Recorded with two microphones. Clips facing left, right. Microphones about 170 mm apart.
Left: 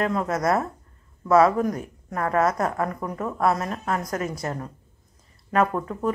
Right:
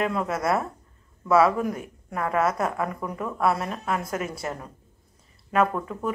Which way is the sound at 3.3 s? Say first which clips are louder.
Left 1 dB; 45° left (ahead or behind).